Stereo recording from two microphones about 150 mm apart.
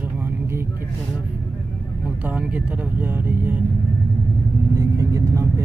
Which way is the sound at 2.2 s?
10° right (ahead or behind).